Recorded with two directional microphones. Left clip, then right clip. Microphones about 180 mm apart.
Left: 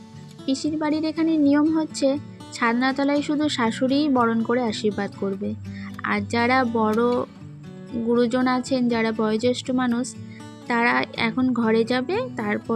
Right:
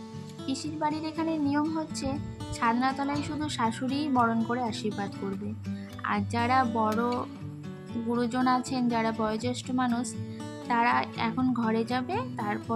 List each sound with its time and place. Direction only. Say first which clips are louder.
0.4 s speech: left 6 dB; 20° left (ahead or behind)
6.0 s speech: left 6 dB; 25° left (ahead or behind)
8.1 s speech: left 6 dB; 20° left (ahead or behind)